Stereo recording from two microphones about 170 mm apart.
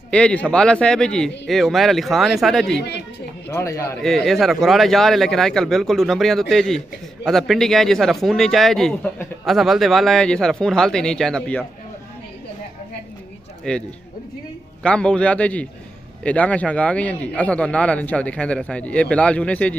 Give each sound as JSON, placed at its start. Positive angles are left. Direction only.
{"t": 0.1, "sound": "speech", "side_deg": 5}
{"t": 3.4, "sound": "a man's voice", "side_deg": 15}
{"t": 4.0, "sound": "speech", "side_deg": 0}
{"t": 13.7, "sound": "a man's voice", "side_deg": 5}